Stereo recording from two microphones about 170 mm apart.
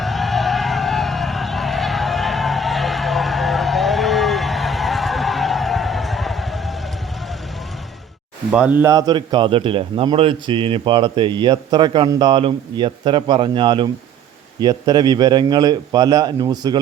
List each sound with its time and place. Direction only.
0.0 s music: centre (ahead or behind)
8.4 s a man's voice: 10° right (ahead or behind)